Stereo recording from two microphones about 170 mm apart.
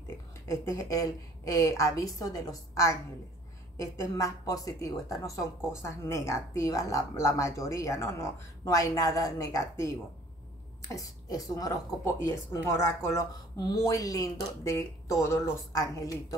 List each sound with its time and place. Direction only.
0.5 s speech: 20° left (ahead or behind)